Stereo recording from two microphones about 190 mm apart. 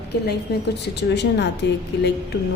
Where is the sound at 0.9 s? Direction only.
65° left (ahead or behind).